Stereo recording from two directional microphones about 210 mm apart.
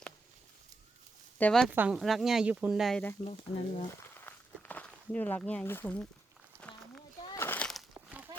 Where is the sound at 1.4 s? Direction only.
Centre (ahead or behind).